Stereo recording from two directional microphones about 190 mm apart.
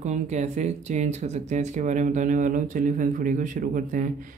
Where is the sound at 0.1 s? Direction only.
40° right (ahead or behind).